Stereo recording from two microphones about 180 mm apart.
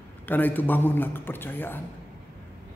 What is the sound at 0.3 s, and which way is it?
A man's voice, 10° left (ahead or behind).